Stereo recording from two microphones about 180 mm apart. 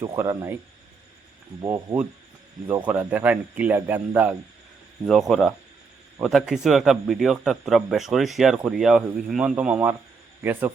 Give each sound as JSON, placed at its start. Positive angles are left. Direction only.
{"t": 0.0, "sound": "speech", "side_deg": -15}
{"t": 1.6, "sound": "speech", "side_deg": -15}
{"t": 5.3, "sound": "a man's voice", "side_deg": 0}